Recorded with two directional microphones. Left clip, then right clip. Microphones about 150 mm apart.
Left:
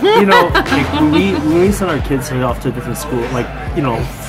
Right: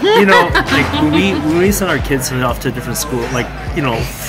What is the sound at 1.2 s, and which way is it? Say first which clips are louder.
Speech: left 1 dB; centre (ahead or behind).